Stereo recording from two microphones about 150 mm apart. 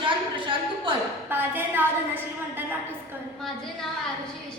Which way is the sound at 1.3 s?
15° right (ahead or behind).